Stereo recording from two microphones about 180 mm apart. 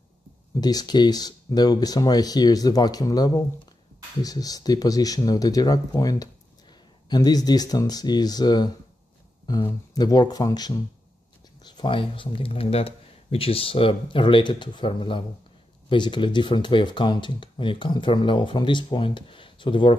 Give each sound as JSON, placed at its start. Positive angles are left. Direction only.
{"t": 0.6, "sound": "speech", "side_deg": 20}